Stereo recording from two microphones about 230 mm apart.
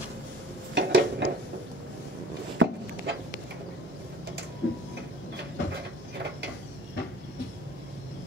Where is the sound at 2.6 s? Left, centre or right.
Right.